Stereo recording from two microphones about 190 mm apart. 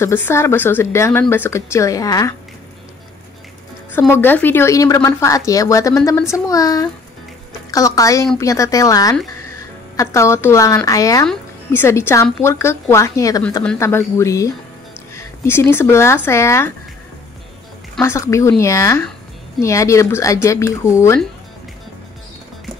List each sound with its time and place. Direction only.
0.0 s speech: 10° left (ahead or behind)
4.1 s speech: 10° left (ahead or behind)
18.0 s speech: 15° left (ahead or behind)